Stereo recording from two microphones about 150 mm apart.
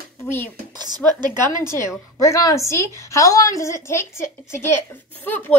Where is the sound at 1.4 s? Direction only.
15° left (ahead or behind).